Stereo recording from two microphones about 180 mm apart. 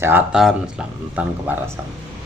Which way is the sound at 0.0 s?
10° right (ahead or behind).